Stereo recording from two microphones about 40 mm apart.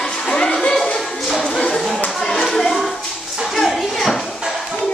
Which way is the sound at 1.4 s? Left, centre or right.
Left.